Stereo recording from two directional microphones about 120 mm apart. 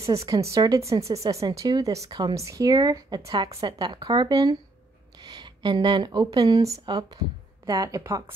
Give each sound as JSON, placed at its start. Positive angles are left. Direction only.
{"t": 0.0, "sound": "speech", "side_deg": -25}